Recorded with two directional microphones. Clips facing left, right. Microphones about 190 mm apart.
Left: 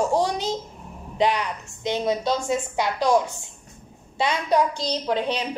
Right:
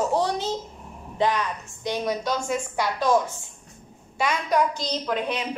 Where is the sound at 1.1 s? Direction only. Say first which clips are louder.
Left 1 dB; 15° left (ahead or behind).